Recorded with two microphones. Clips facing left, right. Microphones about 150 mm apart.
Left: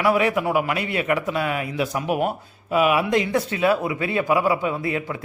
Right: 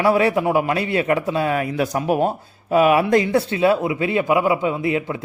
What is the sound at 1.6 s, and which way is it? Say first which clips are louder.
A man's voice: right 4 dB; 45° right (ahead or behind).